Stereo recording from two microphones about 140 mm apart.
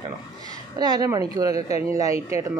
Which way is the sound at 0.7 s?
30° right (ahead or behind).